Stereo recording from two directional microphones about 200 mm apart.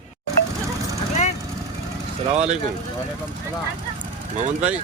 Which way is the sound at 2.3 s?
35° right (ahead or behind).